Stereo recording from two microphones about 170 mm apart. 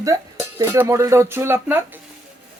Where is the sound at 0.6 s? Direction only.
15° right (ahead or behind).